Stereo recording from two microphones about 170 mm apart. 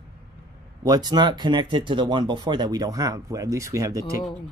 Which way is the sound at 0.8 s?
25° right (ahead or behind).